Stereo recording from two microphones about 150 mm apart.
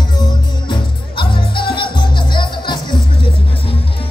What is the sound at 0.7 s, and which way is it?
Music, 35° left (ahead or behind).